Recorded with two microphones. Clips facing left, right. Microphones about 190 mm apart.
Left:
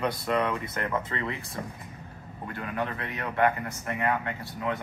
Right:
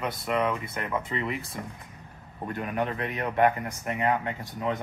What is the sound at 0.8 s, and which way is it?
Speech, 15° right (ahead or behind).